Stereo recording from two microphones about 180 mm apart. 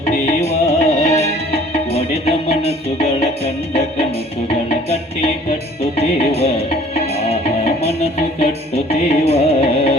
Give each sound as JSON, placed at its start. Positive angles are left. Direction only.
{"t": 0.4, "sound": "music", "side_deg": 35}
{"t": 4.7, "sound": "music", "side_deg": 35}